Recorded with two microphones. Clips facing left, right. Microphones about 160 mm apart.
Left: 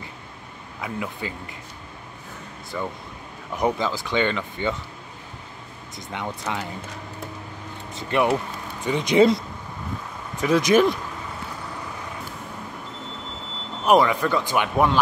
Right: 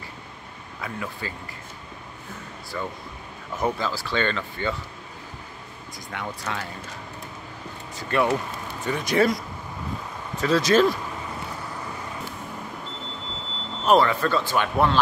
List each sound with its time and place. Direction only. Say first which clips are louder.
0.7 s speech: left 3 dB; 15° left (ahead or behind)
2.7 s speech: left 2 dB; 10° left (ahead or behind)
6.1 s speech: left 2 dB; 20° left (ahead or behind)
7.9 s speech: left 1 dB; 20° left (ahead or behind)
10.4 s speech: left 1 dB; 15° left (ahead or behind)
13.8 s speech: left 1 dB; 15° left (ahead or behind)